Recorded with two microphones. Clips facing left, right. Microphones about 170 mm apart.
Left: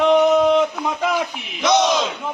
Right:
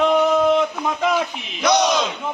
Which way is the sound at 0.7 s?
Centre (ahead or behind).